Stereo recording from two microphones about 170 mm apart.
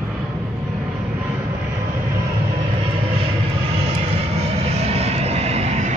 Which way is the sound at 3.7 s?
35° right (ahead or behind).